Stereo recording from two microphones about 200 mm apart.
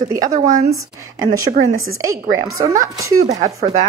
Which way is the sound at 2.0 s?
15° right (ahead or behind).